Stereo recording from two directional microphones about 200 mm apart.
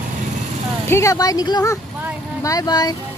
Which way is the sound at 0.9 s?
15° left (ahead or behind).